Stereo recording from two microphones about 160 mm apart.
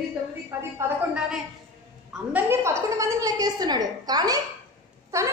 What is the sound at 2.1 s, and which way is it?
A woman's voice, 10° right (ahead or behind).